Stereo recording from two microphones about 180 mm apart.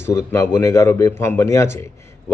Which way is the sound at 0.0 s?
15° left (ahead or behind).